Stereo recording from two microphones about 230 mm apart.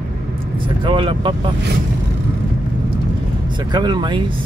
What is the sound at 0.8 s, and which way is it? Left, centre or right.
Speech, right.